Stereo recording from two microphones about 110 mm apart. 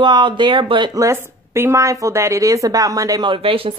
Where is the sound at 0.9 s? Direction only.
25° right (ahead or behind).